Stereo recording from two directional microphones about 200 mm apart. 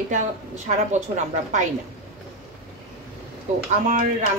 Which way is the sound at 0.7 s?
35° right (ahead or behind).